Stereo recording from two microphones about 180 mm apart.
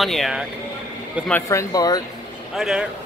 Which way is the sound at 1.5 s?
20° left (ahead or behind).